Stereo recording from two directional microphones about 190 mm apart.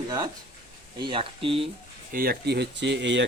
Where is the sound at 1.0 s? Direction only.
25° right (ahead or behind).